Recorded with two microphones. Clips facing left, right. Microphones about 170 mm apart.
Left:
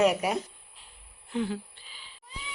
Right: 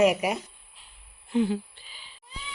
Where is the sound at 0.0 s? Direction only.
10° right (ahead or behind).